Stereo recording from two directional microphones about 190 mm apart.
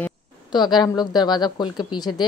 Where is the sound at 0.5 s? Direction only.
25° left (ahead or behind).